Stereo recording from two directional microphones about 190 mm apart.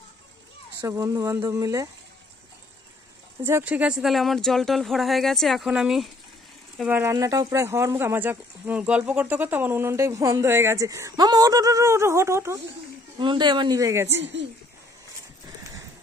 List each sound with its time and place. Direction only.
0.8 s speech: 15° right (ahead or behind)
3.4 s speech: 10° right (ahead or behind)
13.2 s a man's voice: 25° right (ahead or behind)